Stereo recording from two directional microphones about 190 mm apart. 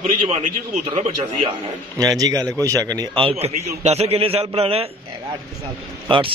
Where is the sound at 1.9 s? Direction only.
20° right (ahead or behind).